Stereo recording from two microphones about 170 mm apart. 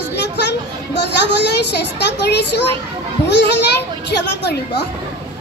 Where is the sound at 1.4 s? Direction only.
85° left.